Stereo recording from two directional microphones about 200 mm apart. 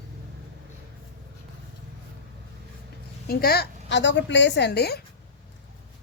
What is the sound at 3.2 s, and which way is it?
Speech, 50° left (ahead or behind).